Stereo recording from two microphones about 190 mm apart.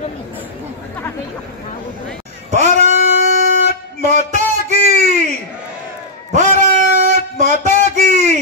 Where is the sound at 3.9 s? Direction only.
40° right (ahead or behind).